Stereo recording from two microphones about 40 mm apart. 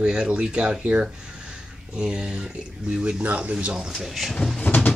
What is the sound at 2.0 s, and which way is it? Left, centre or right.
Speech, right.